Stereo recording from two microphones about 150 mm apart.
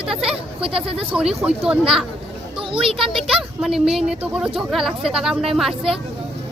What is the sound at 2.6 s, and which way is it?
Speech, 35° right (ahead or behind).